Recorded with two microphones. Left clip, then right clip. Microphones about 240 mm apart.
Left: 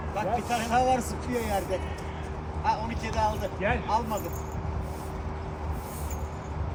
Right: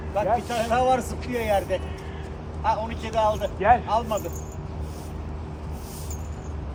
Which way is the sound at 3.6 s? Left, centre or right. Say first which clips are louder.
Right 12 dB; right.